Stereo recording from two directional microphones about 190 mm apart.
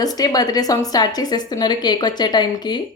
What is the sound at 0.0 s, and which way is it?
A woman's voice, 20° left (ahead or behind).